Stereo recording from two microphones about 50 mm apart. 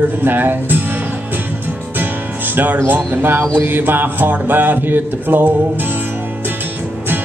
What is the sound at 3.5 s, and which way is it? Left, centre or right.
Music, right.